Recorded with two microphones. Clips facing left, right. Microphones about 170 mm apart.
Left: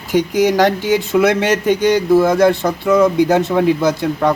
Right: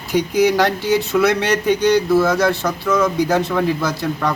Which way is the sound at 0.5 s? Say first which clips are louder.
Left 3 dB; 15° left (ahead or behind).